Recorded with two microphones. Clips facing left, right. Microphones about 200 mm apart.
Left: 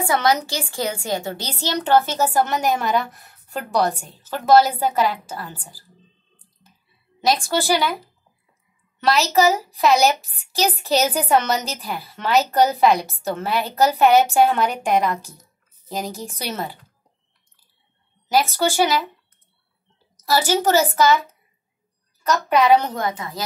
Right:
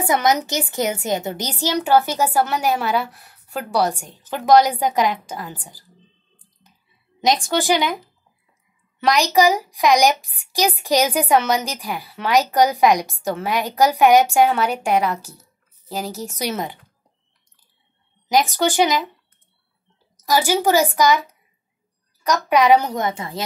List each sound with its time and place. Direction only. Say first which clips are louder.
0.0 s a woman's voice: right 1 dB; 20° right (ahead or behind)
7.2 s a woman's voice: right 1 dB; 20° right (ahead or behind)
9.0 s a woman's voice: right 1 dB; 15° right (ahead or behind)
16.2 s a woman's voice: right 3 dB; 15° right (ahead or behind)
18.3 s a woman's voice: right 1 dB; 15° right (ahead or behind)
20.2 s a woman's voice: right 1 dB; 10° right (ahead or behind)
23.0 s a woman's voice: right 1 dB; 25° right (ahead or behind)